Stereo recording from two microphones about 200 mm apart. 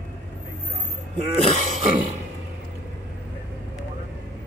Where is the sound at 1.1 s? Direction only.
35° right (ahead or behind).